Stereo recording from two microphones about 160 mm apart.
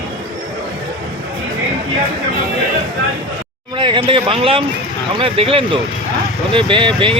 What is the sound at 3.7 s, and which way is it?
Speech, 30° right (ahead or behind).